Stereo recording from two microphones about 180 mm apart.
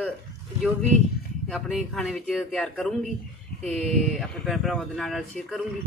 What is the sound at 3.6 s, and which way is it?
Speech, 35° right (ahead or behind).